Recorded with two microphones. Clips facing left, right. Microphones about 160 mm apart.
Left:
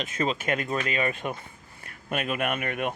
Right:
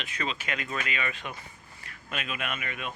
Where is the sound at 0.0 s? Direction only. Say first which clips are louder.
Left 7 dB; 45° left (ahead or behind).